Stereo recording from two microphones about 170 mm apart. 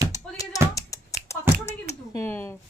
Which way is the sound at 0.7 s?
20° left (ahead or behind).